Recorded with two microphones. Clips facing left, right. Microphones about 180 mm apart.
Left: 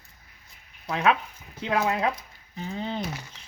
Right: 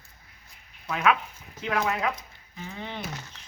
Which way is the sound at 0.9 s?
30° left (ahead or behind).